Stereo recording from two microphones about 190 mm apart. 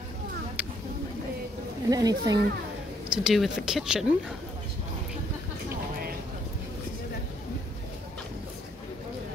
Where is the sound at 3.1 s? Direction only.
Centre (ahead or behind).